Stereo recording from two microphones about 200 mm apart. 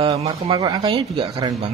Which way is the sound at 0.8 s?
30° right (ahead or behind).